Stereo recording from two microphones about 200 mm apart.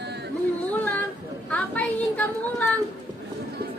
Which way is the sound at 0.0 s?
55° right (ahead or behind).